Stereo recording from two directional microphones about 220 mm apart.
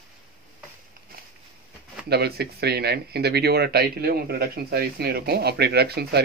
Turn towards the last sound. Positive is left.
turn(degrees=-45)  # may be behind; listen again after turning